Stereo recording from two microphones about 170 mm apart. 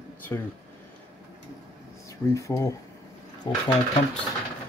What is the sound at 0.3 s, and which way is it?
Speech, 15° left (ahead or behind).